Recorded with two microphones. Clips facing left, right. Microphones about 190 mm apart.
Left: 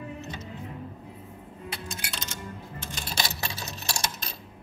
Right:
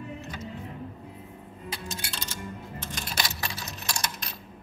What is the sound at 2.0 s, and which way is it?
Music, 30° right (ahead or behind).